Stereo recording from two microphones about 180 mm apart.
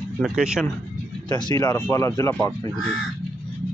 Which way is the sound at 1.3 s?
20° left (ahead or behind).